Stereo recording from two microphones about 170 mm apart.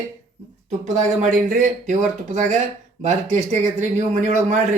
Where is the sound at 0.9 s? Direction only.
45° right (ahead or behind).